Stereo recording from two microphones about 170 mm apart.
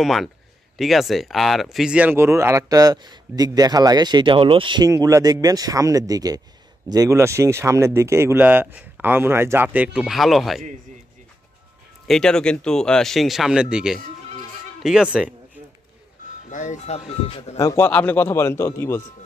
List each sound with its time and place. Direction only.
0.0 s speech: centre (ahead or behind)
12.1 s speech: 5° left (ahead or behind)
14.8 s music: 5° right (ahead or behind)
16.4 s speech: 50° left (ahead or behind)
17.6 s speech: 15° left (ahead or behind)